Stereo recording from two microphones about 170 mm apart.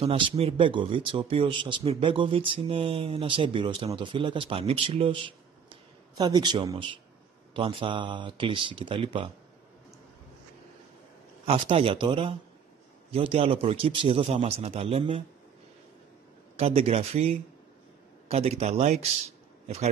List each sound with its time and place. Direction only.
0.0 s speech: 35° right (ahead or behind)
11.4 s speech: 35° right (ahead or behind)
16.5 s speech: 35° right (ahead or behind)